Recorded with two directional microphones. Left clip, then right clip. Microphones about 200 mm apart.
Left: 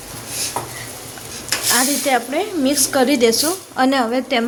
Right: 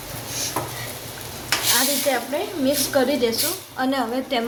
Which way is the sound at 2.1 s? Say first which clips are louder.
Left 5 dB; 60° left (ahead or behind).